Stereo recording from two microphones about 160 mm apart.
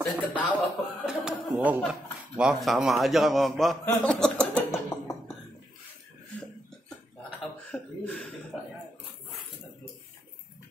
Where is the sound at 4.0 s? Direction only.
5° left (ahead or behind).